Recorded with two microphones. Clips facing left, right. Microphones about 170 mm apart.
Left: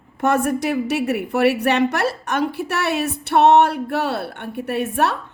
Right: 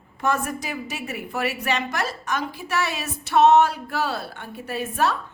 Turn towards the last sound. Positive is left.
turn(degrees=65)  # may be behind; listen again after turning